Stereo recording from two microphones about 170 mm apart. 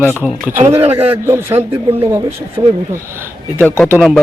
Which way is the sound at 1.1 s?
15° right (ahead or behind).